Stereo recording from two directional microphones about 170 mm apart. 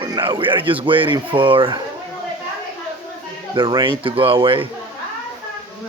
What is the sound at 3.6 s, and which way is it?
Speech, 30° right (ahead or behind).